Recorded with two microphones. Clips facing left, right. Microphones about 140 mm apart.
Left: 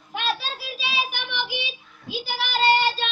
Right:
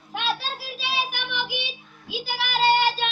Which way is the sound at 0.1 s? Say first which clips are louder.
Even; centre (ahead or behind).